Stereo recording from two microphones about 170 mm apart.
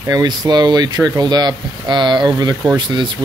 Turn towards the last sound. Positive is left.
turn(degrees=-25)  # may be behind; listen again after turning